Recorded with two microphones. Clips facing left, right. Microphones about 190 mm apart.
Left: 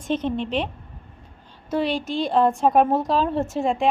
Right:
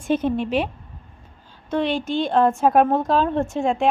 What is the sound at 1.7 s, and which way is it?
A woman's voice, centre (ahead or behind).